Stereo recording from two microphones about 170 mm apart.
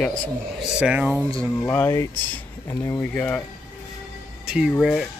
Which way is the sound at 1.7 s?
15° left (ahead or behind).